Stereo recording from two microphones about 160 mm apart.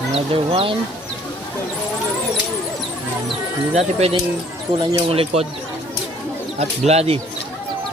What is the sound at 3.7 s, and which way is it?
Speech, 40° right (ahead or behind).